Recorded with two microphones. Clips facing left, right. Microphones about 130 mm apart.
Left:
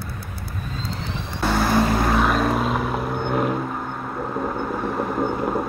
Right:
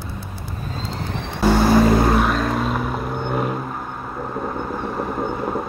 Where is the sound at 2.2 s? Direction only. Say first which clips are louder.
Even; 5° left (ahead or behind).